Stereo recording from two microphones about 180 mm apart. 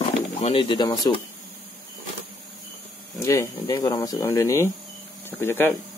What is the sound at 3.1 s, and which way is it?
Speech, 15° left (ahead or behind).